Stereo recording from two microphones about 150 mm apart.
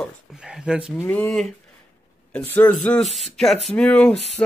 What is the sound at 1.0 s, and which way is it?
Speech, 10° left (ahead or behind).